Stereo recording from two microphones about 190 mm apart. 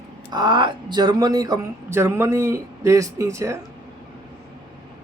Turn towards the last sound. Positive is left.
turn(degrees=-15)  # may be behind; listen again after turning